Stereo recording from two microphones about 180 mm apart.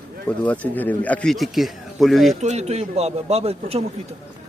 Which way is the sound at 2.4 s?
40° right (ahead or behind).